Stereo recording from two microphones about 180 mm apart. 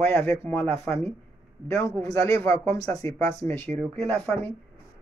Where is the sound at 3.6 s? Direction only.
40° right (ahead or behind).